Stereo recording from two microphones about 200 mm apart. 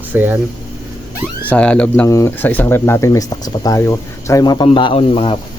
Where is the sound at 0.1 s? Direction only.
10° right (ahead or behind).